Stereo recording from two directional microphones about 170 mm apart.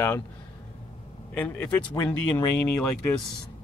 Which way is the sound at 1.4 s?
10° left (ahead or behind).